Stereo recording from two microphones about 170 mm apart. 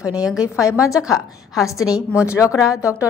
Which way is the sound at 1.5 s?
20° left (ahead or behind).